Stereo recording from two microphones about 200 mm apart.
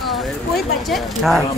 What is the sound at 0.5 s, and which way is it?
Speech, centre (ahead or behind).